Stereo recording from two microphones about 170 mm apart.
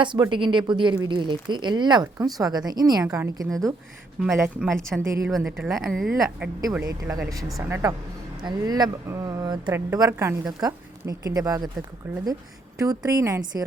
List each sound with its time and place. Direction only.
0.0 s a woman's voice: 30° right (ahead or behind)
5.5 s speech: centre (ahead or behind)
6.7 s a woman's voice: 20° right (ahead or behind)